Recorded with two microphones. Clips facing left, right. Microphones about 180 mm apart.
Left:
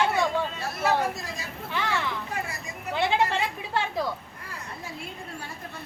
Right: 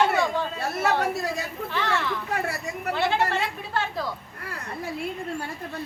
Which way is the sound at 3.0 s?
15° left (ahead or behind).